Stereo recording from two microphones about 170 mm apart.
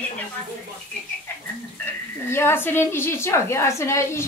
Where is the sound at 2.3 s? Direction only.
15° left (ahead or behind).